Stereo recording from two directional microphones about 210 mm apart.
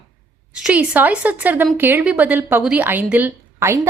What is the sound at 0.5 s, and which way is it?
A woman's voice, 5° right (ahead or behind).